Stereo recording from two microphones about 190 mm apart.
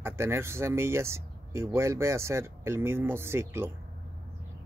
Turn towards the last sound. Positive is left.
turn(degrees=-10)  # may be behind; listen again after turning